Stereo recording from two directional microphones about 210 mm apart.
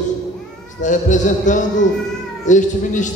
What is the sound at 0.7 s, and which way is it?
A man's voice, 35° left (ahead or behind).